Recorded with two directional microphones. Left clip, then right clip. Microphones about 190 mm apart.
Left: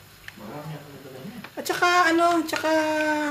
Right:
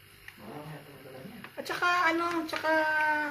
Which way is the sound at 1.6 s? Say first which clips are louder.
Left 7 dB; 50° left (ahead or behind).